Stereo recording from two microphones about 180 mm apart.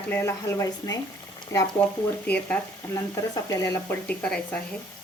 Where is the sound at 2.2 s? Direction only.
10° left (ahead or behind).